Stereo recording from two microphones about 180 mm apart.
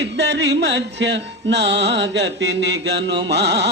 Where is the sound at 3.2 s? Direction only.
70° right (ahead or behind).